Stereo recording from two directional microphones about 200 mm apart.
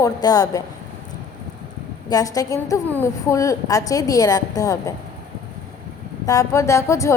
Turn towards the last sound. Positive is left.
turn(degrees=15)  # may be behind; listen again after turning